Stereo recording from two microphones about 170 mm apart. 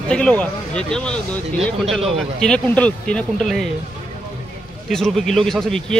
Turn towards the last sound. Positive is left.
turn(degrees=0)  # may be behind; listen again after turning